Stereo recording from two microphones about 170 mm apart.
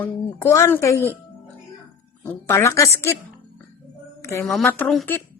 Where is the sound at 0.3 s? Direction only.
15° left (ahead or behind).